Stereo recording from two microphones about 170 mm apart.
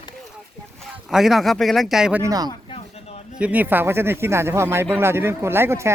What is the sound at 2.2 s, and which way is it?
Speech, 20° right (ahead or behind).